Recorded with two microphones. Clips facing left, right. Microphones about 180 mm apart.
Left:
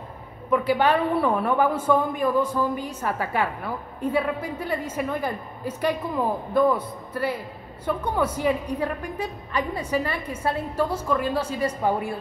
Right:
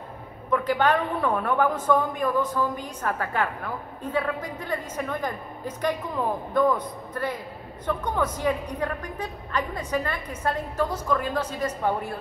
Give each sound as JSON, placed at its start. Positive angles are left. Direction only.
{"t": 0.5, "sound": "a woman's voice", "side_deg": 10}